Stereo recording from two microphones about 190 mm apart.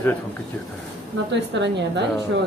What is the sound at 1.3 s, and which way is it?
Speech, 70° right (ahead or behind).